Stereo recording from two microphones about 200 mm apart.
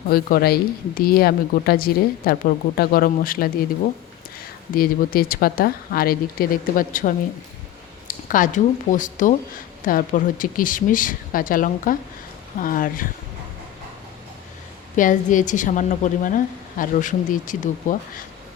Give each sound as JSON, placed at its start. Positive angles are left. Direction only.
{"t": 0.1, "sound": "speech", "side_deg": 50}
{"t": 4.7, "sound": "a woman's voice", "side_deg": 45}
{"t": 14.9, "sound": "a woman's voice", "side_deg": 40}